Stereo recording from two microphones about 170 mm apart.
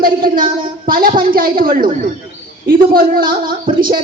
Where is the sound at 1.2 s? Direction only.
55° right (ahead or behind).